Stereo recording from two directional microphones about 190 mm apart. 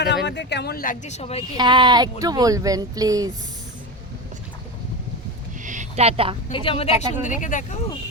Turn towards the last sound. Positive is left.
turn(degrees=40)  # may be behind; listen again after turning